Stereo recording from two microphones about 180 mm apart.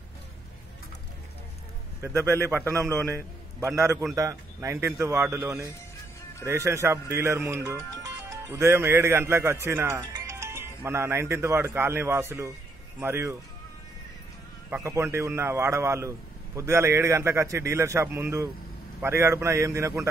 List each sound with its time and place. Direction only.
2.0 s a man's voice: 15° right (ahead or behind)
14.7 s a man's voice: 15° right (ahead or behind)